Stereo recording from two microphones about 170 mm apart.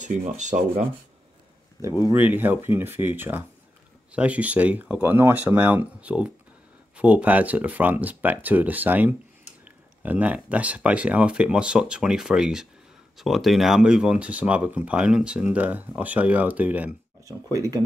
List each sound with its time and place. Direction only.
0.0 s speech: 45° right (ahead or behind)
2.1 s speech: 10° right (ahead or behind)
17.5 s speech: 20° right (ahead or behind)